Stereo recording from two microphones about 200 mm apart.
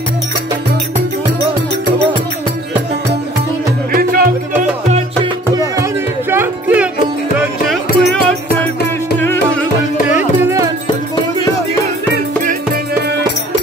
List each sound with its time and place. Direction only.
3.9 s music: 45° right (ahead or behind)
4.8 s music: 35° right (ahead or behind)
5.5 s music: 20° right (ahead or behind); by 9.7 s 10° left (ahead or behind)
10.1 s music: 15° right (ahead or behind)